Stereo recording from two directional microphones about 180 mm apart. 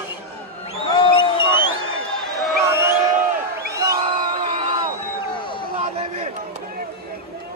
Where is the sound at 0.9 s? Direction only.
25° left (ahead or behind).